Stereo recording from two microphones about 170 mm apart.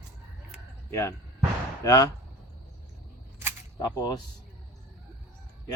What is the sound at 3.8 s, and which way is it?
Speech, 20° left (ahead or behind).